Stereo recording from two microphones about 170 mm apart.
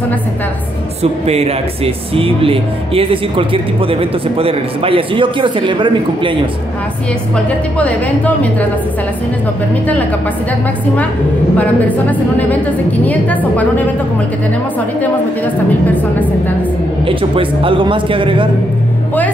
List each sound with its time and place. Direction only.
1.2 s speech: 35° right (ahead or behind)
12.1 s a woman's voice: 10° left (ahead or behind)
15.0 s a woman's voice: 10° left (ahead or behind)
17.0 s speech: 30° right (ahead or behind)